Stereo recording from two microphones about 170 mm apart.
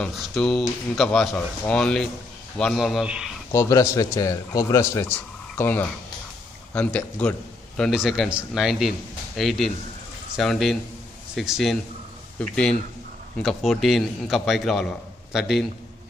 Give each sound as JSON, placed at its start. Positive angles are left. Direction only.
{"t": 0.0, "sound": "a man's voice", "side_deg": 0}
{"t": 3.5, "sound": "a man's voice", "side_deg": 20}